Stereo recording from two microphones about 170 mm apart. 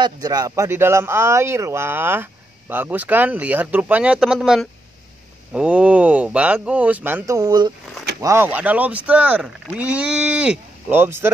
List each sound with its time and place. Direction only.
0.0 s speech: 20° right (ahead or behind)